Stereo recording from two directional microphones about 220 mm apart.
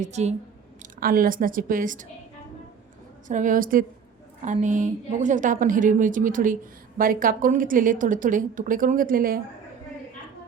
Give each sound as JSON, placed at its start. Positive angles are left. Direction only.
{"t": 0.0, "sound": "a woman's voice", "side_deg": -30}
{"t": 3.2, "sound": "a woman's voice", "side_deg": -35}